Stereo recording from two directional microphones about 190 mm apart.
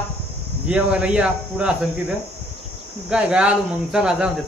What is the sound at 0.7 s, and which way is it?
Speech, 5° right (ahead or behind).